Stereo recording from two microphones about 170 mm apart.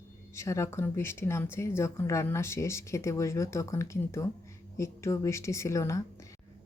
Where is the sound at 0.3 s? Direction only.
15° left (ahead or behind).